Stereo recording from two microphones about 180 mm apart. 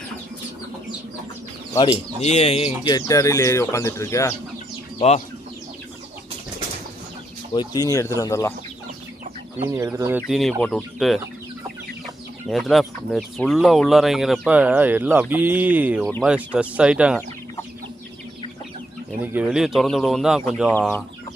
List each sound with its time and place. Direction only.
1.7 s speech: 25° left (ahead or behind)
2.2 s speech: 35° left (ahead or behind)
2.9 s speech: 20° left (ahead or behind)
4.9 s speech: 35° left (ahead or behind)
7.5 s speech: 25° left (ahead or behind)
9.6 s speech: 15° right (ahead or behind)
12.5 s speech: centre (ahead or behind)
19.2 s speech: 10° right (ahead or behind)
20.7 s speech: 10° left (ahead or behind)